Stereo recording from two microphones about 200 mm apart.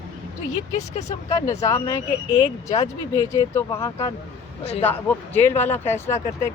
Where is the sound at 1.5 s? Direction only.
15° left (ahead or behind).